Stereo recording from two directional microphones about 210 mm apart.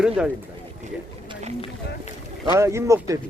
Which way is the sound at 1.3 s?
30° right (ahead or behind).